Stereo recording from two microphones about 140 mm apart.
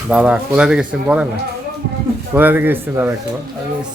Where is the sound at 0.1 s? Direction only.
10° right (ahead or behind).